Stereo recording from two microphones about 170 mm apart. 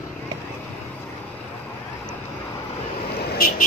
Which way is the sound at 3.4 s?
60° left (ahead or behind).